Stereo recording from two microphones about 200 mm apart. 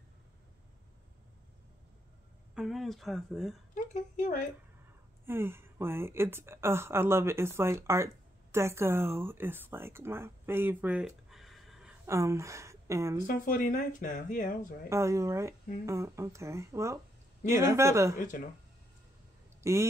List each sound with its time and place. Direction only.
2.5 s speech: centre (ahead or behind)
3.7 s speech: 40° left (ahead or behind)
5.2 s speech: 10° right (ahead or behind)
12.1 s a woman's voice: 15° right (ahead or behind)
13.3 s speech: 40° left (ahead or behind)
14.9 s speech: 15° right (ahead or behind)
19.6 s speech: 15° right (ahead or behind)